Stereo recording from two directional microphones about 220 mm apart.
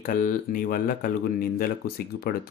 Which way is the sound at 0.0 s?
40° left (ahead or behind).